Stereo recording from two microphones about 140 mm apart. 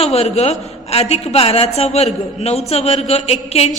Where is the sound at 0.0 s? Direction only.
45° left (ahead or behind).